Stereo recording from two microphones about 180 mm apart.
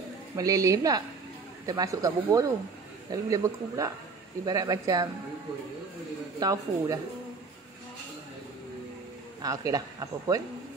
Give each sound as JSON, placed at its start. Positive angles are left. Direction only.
{"t": 0.4, "sound": "a man's voice", "side_deg": -20}
{"t": 6.4, "sound": "a man's voice", "side_deg": -20}
{"t": 9.4, "sound": "a man's voice", "side_deg": -20}